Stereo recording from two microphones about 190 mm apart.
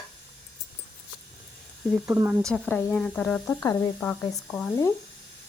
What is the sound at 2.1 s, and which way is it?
Speech, 15° right (ahead or behind).